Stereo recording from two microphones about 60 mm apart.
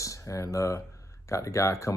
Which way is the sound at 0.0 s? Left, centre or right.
Left.